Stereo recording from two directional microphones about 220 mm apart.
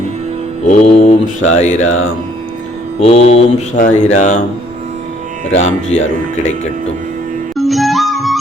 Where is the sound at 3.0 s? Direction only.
25° left (ahead or behind).